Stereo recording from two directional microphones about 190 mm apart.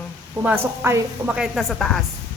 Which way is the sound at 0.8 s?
10° right (ahead or behind).